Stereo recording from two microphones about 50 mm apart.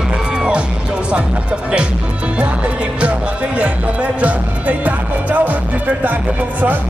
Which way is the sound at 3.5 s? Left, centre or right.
Right.